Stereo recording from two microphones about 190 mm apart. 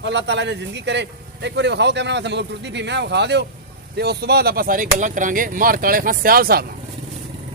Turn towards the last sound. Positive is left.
turn(degrees=-50)  # may be behind; listen again after turning